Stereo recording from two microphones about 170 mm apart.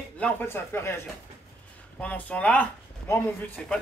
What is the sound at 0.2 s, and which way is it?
Speech, 10° left (ahead or behind).